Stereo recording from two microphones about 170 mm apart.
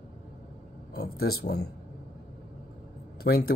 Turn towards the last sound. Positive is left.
turn(degrees=65)  # may be behind; listen again after turning